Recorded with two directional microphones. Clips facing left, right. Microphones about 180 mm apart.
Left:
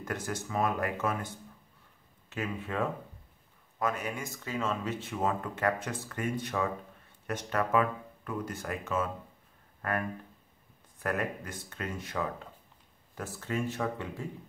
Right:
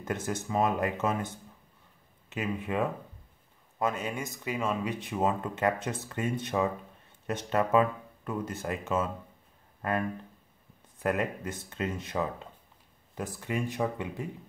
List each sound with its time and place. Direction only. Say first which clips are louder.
0.0 s speech: right 3 dB; 20° right (ahead or behind)